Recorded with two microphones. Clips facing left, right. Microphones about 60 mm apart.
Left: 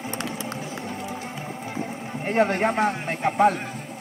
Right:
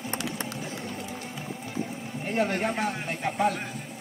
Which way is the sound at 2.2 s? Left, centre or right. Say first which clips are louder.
Left 6 dB; left.